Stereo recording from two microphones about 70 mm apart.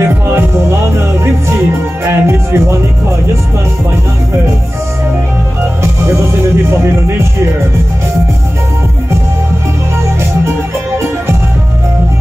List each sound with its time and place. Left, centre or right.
0.0 s music: right
6.7 s music: right